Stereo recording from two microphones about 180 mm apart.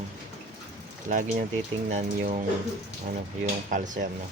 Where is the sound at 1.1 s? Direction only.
45° right (ahead or behind).